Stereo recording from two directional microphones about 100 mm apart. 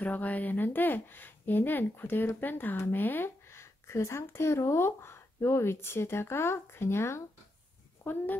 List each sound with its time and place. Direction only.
0.0 s speech: 15° left (ahead or behind)